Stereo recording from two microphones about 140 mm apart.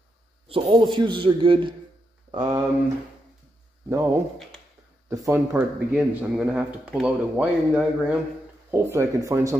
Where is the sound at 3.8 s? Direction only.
20° right (ahead or behind).